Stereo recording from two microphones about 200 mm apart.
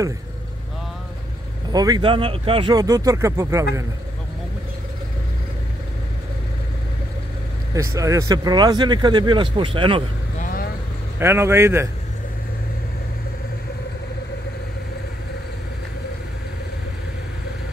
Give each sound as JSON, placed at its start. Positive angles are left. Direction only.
{"t": 1.7, "sound": "speech", "side_deg": -20}
{"t": 7.7, "sound": "speech", "side_deg": -15}
{"t": 10.4, "sound": "vehicle", "side_deg": 45}
{"t": 11.1, "sound": "a man's voice", "side_deg": -10}